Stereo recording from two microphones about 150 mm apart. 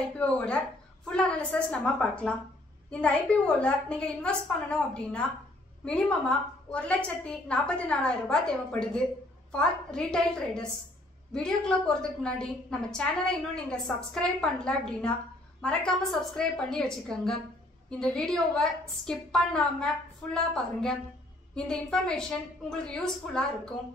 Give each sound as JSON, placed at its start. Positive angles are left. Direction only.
{"t": 0.2, "sound": "a woman's voice", "side_deg": 10}